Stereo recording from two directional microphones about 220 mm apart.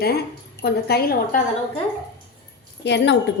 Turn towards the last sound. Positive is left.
turn(degrees=50)  # may be behind; listen again after turning